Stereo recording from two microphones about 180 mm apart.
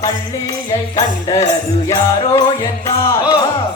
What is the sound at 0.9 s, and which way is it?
Music, 20° left (ahead or behind).